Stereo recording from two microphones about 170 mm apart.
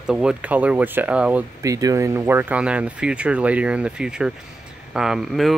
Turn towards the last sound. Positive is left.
turn(degrees=0)  # may be behind; listen again after turning